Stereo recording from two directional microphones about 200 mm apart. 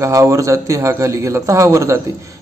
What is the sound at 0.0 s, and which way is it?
A man's voice, 15° right (ahead or behind).